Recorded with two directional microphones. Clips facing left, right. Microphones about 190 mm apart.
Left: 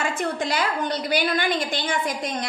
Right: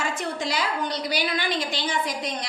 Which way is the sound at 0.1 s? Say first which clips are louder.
Left 3 dB; 55° left (ahead or behind).